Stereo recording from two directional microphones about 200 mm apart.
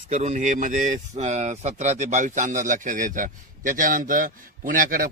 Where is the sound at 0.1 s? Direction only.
35° right (ahead or behind).